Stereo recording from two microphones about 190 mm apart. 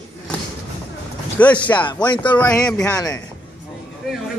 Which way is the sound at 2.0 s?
25° left (ahead or behind).